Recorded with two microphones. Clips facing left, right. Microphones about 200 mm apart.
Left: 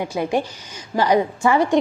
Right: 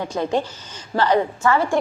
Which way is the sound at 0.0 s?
10° left (ahead or behind).